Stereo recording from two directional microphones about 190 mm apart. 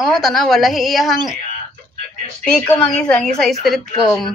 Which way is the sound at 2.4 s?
5° left (ahead or behind).